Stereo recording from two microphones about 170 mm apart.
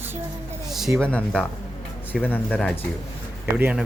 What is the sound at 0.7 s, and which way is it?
A woman's voice, centre (ahead or behind).